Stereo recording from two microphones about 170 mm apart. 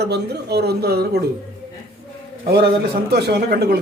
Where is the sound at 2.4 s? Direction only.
65° right (ahead or behind).